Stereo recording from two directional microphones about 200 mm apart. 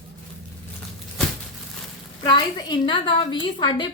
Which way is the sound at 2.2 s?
20° left (ahead or behind).